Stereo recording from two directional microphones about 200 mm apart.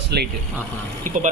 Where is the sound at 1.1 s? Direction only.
40° right (ahead or behind).